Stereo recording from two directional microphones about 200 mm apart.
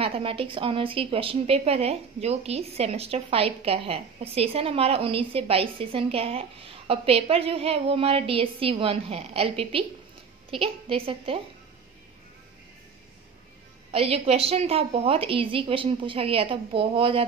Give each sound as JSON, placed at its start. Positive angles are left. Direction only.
{"t": 0.0, "sound": "a woman's voice", "side_deg": -30}
{"t": 13.9, "sound": "a woman's voice", "side_deg": -30}